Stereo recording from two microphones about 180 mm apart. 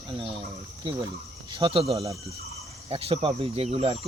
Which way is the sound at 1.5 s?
30° right (ahead or behind).